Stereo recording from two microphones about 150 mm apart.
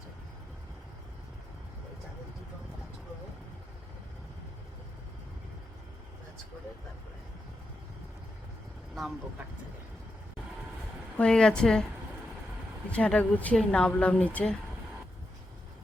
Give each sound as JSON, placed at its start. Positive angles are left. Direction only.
{"t": 11.2, "sound": "a woman's voice", "side_deg": 5}
{"t": 12.9, "sound": "a woman's voice", "side_deg": 10}